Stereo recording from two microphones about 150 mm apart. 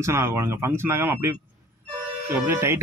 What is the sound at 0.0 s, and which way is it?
Speech, 20° right (ahead or behind).